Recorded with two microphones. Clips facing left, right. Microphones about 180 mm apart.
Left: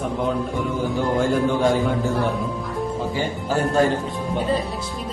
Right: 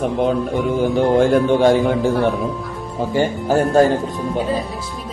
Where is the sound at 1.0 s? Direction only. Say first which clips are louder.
Right 6 dB; 75° right (ahead or behind).